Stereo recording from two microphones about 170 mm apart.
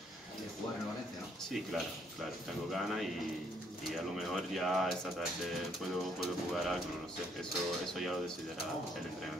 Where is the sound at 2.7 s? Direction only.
Centre (ahead or behind).